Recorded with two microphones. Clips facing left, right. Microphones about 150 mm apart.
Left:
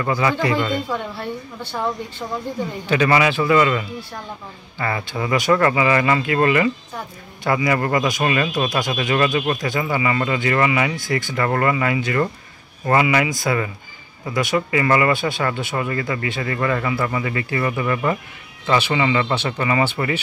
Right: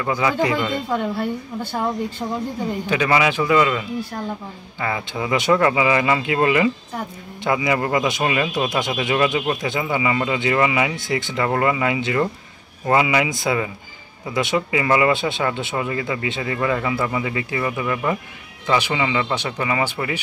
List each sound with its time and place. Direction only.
0.0 s speech: 10° right (ahead or behind)
2.9 s speech: 10° right (ahead or behind)